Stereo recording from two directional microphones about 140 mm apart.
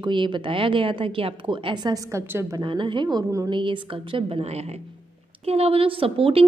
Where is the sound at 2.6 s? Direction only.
35° right (ahead or behind).